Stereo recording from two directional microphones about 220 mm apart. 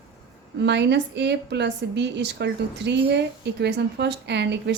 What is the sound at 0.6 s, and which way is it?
A woman's voice, 50° right (ahead or behind).